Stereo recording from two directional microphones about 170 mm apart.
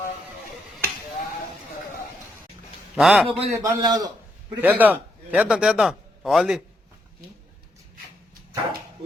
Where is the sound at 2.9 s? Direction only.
5° right (ahead or behind).